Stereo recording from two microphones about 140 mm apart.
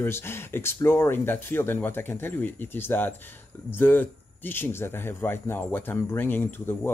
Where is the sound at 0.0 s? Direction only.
15° left (ahead or behind).